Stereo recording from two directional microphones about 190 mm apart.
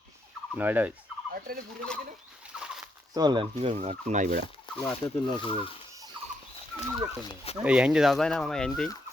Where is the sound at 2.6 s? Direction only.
5° right (ahead or behind).